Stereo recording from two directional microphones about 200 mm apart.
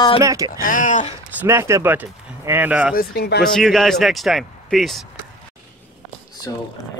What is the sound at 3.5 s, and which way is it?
Speech, centre (ahead or behind).